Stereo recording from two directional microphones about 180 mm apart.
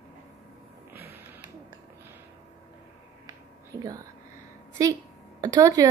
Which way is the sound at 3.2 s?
20° right (ahead or behind).